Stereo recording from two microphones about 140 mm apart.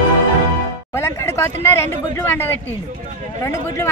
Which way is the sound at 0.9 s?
20° left (ahead or behind).